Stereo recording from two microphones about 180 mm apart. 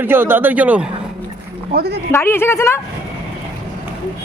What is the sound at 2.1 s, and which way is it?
Speech, 15° left (ahead or behind).